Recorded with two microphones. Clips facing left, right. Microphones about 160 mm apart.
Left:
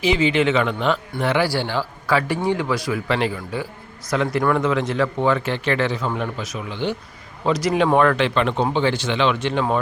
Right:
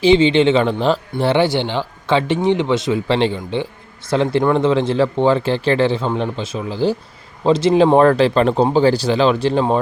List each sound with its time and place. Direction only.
0.0 s a man's voice: 30° right (ahead or behind)